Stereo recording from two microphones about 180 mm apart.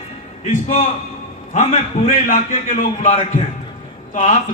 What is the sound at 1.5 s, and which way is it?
A man's voice, 45° left (ahead or behind).